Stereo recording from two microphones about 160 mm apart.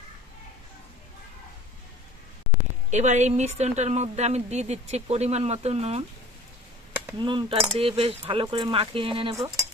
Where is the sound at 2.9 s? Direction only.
45° right (ahead or behind).